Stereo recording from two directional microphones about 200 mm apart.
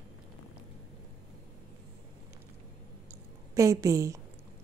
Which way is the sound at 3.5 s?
15° right (ahead or behind).